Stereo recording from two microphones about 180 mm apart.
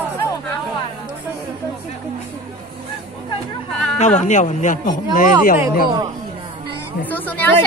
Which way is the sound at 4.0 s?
40° left (ahead or behind).